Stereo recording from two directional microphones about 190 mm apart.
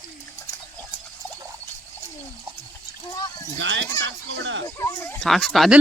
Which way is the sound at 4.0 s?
75° right (ahead or behind).